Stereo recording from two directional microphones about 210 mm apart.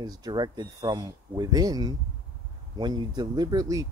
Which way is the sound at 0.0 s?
20° right (ahead or behind).